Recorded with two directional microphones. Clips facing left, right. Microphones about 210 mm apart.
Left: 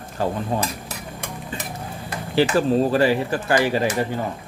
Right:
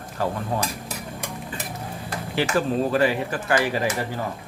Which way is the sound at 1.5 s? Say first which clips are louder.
Left 2 dB; 25° left (ahead or behind).